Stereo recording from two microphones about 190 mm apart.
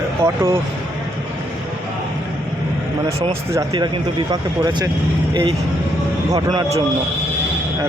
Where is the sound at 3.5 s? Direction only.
20° right (ahead or behind).